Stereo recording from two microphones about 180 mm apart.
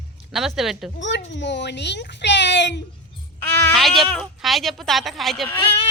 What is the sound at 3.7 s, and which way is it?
Speech, centre (ahead or behind).